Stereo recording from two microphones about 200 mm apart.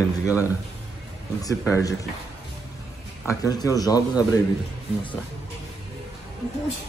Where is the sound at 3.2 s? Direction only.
15° left (ahead or behind).